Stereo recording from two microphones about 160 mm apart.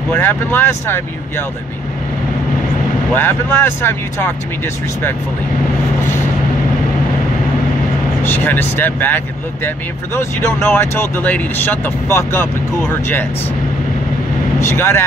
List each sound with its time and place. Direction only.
0.1 s speech: 15° left (ahead or behind)
3.1 s speech: 10° left (ahead or behind)
8.2 s speech: 10° left (ahead or behind)
14.6 s speech: 15° left (ahead or behind)